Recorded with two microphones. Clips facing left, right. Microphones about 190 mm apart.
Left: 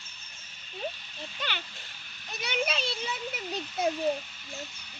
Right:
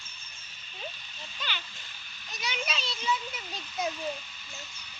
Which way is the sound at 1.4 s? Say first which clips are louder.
Left 2 dB; 60° left (ahead or behind).